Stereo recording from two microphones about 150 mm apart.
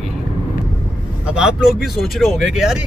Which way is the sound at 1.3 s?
5° right (ahead or behind).